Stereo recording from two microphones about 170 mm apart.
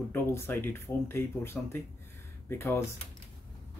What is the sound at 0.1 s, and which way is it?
Speech, 10° left (ahead or behind).